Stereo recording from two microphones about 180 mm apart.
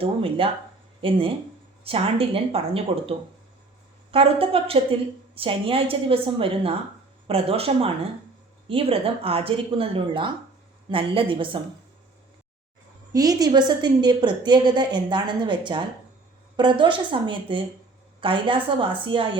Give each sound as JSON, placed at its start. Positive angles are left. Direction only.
{"t": 0.0, "sound": "a woman's voice", "side_deg": -30}
{"t": 13.1, "sound": "a woman's voice", "side_deg": -20}